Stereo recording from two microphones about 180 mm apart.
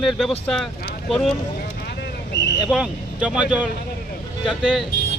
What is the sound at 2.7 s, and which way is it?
Speech, 5° right (ahead or behind).